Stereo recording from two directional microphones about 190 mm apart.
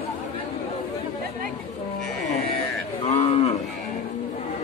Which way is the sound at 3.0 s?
30° left (ahead or behind).